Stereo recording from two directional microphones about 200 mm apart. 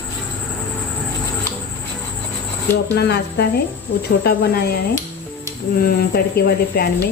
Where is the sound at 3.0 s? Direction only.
55° left (ahead or behind).